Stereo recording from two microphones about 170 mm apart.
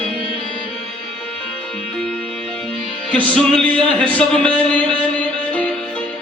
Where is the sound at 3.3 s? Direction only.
5° left (ahead or behind).